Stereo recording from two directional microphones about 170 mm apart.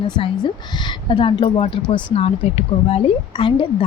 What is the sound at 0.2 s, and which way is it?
A woman's voice, 25° left (ahead or behind).